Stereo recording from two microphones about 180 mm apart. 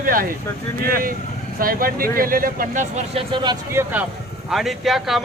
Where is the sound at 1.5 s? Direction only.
50° right (ahead or behind); by 3.5 s 30° right (ahead or behind).